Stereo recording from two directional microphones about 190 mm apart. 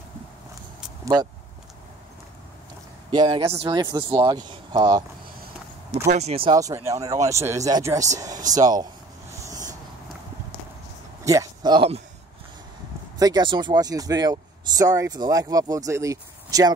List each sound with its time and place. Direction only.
3.1 s speech: 20° right (ahead or behind)
6.0 s speech: 35° right (ahead or behind)
6.5 s speech: 15° right (ahead or behind)
11.2 s a sound: 20° right (ahead or behind)
13.2 s speech: 20° right (ahead or behind)